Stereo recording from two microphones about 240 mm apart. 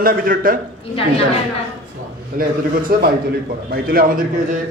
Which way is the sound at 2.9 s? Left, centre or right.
Right.